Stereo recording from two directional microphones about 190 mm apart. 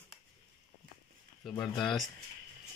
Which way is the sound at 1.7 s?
25° left (ahead or behind).